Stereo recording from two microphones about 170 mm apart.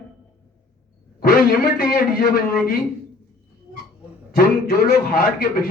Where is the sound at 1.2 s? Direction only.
60° left (ahead or behind).